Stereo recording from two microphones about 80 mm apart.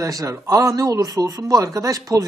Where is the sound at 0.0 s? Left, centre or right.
Right.